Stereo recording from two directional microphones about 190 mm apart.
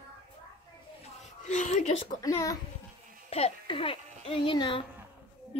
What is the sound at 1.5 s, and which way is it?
Speech, 40° left (ahead or behind).